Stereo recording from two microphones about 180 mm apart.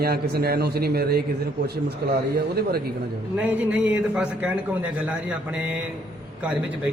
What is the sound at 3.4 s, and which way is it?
A man's voice, 10° right (ahead or behind).